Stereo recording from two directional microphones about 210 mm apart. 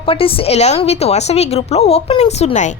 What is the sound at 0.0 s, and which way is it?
A woman's voice, 25° left (ahead or behind).